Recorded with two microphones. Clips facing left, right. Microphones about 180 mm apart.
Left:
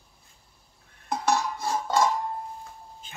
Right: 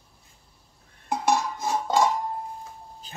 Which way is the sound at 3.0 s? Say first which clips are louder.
Right 3 dB; 35° right (ahead or behind).